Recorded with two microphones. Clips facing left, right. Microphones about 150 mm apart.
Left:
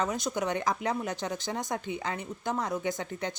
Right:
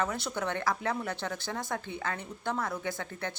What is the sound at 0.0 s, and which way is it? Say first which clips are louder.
Speech: left 2 dB; 15° left (ahead or behind).